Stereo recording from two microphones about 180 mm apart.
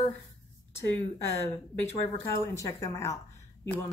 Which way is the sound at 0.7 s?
15° left (ahead or behind).